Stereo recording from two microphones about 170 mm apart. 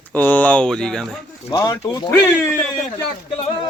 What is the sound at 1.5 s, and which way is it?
Speech, 20° left (ahead or behind).